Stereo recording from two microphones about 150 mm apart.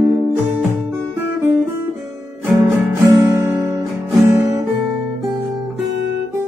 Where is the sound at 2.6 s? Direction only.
20° right (ahead or behind).